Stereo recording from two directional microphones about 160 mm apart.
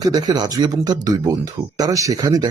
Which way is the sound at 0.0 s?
25° right (ahead or behind).